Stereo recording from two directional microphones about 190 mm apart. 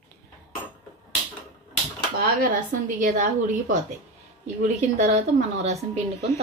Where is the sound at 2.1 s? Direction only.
50° right (ahead or behind).